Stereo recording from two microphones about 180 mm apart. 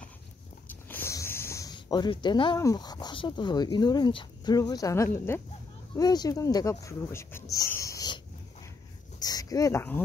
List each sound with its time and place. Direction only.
0.7 s speech: 10° left (ahead or behind)
7.5 s a sound: 15° left (ahead or behind)
9.2 s speech: 20° left (ahead or behind)